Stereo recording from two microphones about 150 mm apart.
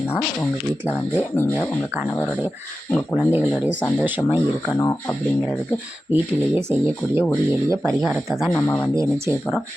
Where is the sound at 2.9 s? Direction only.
10° left (ahead or behind).